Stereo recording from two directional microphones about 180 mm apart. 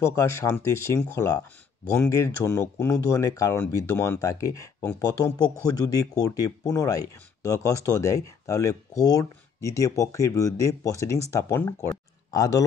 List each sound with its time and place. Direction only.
0.0 s speech: 15° left (ahead or behind)